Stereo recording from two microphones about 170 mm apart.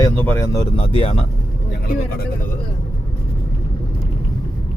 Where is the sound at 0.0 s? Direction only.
15° left (ahead or behind).